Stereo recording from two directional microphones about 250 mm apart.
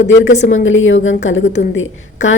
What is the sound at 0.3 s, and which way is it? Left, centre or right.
Speech, left.